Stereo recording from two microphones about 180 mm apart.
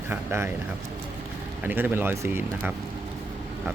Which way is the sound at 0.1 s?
15° right (ahead or behind).